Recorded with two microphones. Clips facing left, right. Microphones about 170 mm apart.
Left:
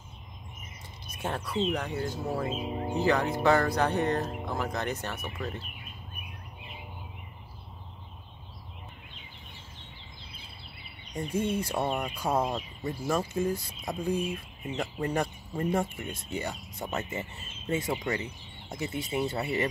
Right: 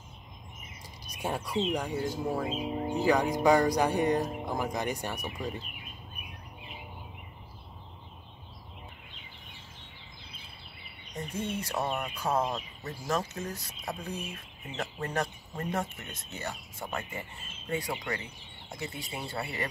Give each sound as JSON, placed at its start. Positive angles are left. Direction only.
{"t": 1.0, "sound": "speech", "side_deg": -15}
{"t": 11.1, "sound": "speech", "side_deg": 10}